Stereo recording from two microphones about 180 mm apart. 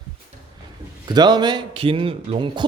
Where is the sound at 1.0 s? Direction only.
25° right (ahead or behind).